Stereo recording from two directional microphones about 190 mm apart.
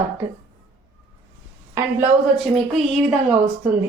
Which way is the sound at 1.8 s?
15° right (ahead or behind).